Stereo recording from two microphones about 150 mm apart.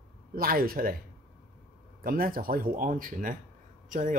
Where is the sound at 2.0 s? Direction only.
70° right (ahead or behind).